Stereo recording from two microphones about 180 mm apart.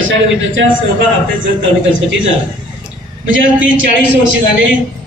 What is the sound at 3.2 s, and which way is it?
Speech, 90° right.